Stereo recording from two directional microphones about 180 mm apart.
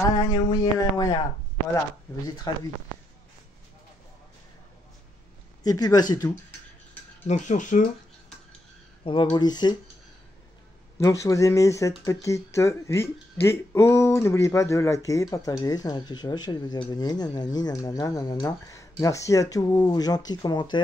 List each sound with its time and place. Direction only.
0.1 s speech: 20° left (ahead or behind)
2.2 s speech: 20° left (ahead or behind)
5.6 s speech: 20° left (ahead or behind)
7.2 s speech: 40° left (ahead or behind)
9.0 s speech: 30° left (ahead or behind)
11.0 s speech: 15° left (ahead or behind)